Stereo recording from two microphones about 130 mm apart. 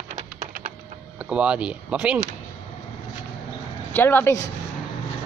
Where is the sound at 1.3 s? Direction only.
10° right (ahead or behind).